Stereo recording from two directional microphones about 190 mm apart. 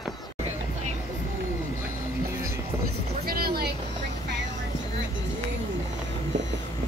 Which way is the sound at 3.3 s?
55° right (ahead or behind).